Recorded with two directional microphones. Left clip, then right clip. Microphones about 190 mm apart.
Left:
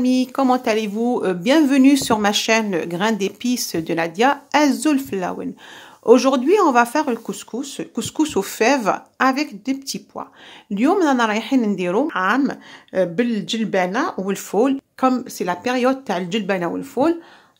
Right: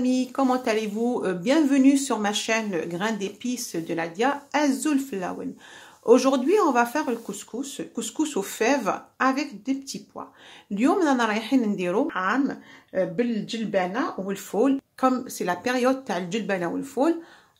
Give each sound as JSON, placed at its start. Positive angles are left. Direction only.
{"t": 0.0, "sound": "a woman's voice", "side_deg": 25}